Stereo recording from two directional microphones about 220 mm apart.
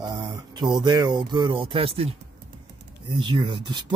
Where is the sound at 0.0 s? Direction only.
20° right (ahead or behind).